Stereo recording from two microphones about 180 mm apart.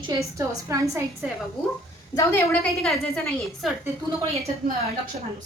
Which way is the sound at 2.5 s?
Centre (ahead or behind).